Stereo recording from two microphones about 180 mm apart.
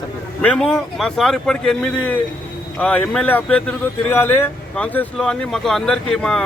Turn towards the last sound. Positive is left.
turn(degrees=5)  # may be behind; listen again after turning